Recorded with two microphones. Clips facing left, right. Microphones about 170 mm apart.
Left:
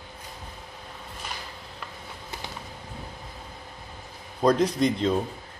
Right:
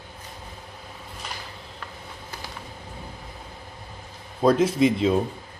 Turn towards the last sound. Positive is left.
turn(degrees=-5)  # may be behind; listen again after turning